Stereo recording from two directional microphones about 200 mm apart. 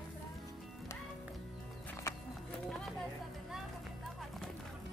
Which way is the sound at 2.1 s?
15° left (ahead or behind).